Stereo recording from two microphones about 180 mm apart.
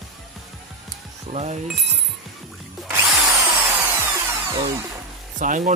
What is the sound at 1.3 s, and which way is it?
Speech, 40° right (ahead or behind).